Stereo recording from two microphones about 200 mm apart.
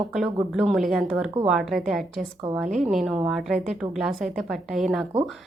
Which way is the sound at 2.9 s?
Centre (ahead or behind).